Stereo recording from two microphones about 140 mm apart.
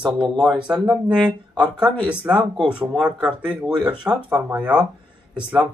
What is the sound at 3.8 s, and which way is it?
Speech, 35° right (ahead or behind).